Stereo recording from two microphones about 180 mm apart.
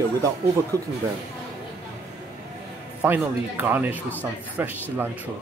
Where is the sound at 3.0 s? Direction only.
10° right (ahead or behind).